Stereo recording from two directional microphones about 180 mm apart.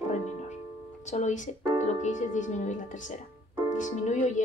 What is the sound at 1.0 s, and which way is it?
Speech, 40° left (ahead or behind).